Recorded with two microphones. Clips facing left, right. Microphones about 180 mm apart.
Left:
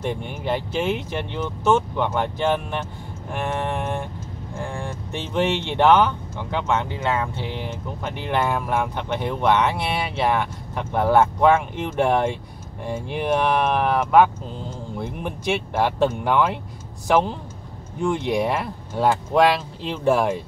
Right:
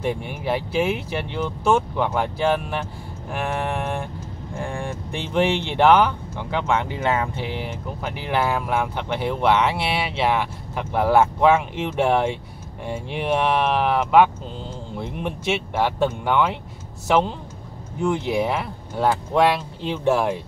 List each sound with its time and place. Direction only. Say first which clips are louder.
0.0 s speech: right 1 dB; 5° right (ahead or behind)
4.6 s vehicle: right 2 dB; 15° right (ahead or behind)
5.9 s speech: even; 5° right (ahead or behind)
18.0 s speech: even; centre (ahead or behind)